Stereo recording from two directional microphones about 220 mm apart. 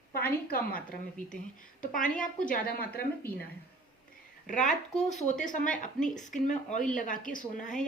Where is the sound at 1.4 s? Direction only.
35° left (ahead or behind).